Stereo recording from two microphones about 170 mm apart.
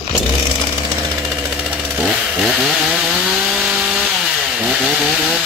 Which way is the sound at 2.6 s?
5° right (ahead or behind).